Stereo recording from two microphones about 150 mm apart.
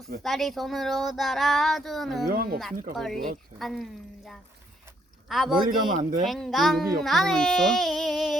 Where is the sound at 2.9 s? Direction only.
Centre (ahead or behind).